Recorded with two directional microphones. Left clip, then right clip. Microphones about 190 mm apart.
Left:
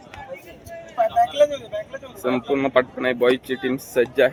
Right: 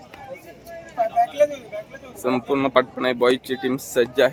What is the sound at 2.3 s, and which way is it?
A man's voice, 10° right (ahead or behind).